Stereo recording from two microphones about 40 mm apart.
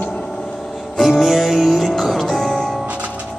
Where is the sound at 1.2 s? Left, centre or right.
Centre.